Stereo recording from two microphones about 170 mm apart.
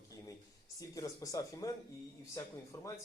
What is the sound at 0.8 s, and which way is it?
Speech, 20° left (ahead or behind).